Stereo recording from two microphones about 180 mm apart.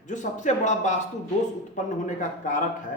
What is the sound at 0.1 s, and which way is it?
Speech, 45° left (ahead or behind).